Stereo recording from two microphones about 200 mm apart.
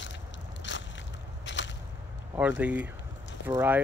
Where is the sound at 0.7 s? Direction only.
65° left (ahead or behind).